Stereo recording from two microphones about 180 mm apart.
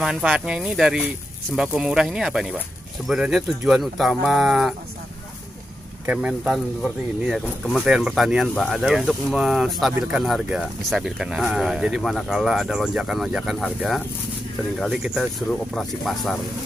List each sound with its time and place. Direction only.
0.0 s speech: 5° right (ahead or behind)
6.0 s speech: 5° right (ahead or behind)